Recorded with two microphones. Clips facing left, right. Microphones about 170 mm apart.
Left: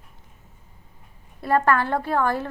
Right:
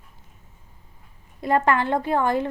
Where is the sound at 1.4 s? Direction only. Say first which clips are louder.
Even; 15° right (ahead or behind).